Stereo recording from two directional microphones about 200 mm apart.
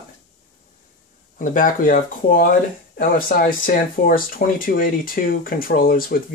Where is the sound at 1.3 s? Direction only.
40° left (ahead or behind).